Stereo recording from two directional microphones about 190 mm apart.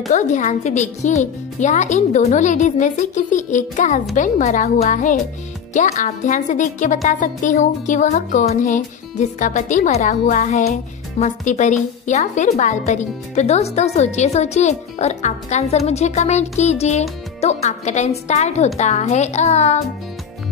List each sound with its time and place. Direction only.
0.1 s a woman's voice: 40° left (ahead or behind)